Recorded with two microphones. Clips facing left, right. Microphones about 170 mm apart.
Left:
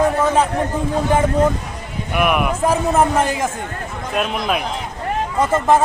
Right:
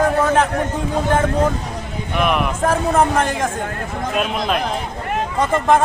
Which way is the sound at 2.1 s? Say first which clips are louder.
Left 1 dB; 10° left (ahead or behind).